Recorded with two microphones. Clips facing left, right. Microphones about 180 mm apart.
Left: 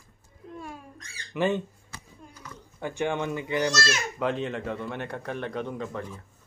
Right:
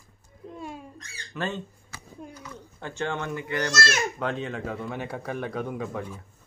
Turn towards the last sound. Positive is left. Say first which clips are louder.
# right 1 dB
turn(degrees=-10)  # may be behind; listen again after turning